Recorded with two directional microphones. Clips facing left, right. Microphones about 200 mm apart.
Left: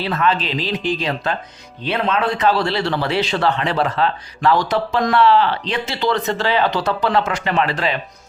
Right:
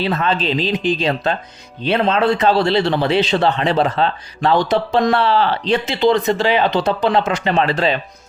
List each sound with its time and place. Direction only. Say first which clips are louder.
0.0 s a man's voice: right 1 dB; 25° right (ahead or behind)
5.8 s a man's voice: right 4 dB; 20° right (ahead or behind)